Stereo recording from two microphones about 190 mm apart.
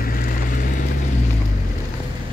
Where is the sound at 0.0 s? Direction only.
50° left (ahead or behind).